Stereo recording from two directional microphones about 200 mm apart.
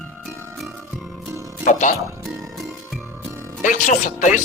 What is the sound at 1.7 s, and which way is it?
Speech, 40° left (ahead or behind).